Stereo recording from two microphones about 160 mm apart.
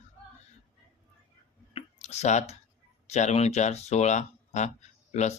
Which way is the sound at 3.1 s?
45° left (ahead or behind).